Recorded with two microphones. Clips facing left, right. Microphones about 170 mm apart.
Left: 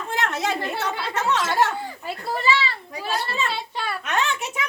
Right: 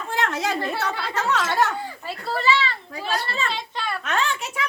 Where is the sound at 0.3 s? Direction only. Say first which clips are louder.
Even; 25° left (ahead or behind).